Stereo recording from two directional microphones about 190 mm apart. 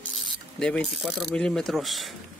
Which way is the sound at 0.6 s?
5° left (ahead or behind).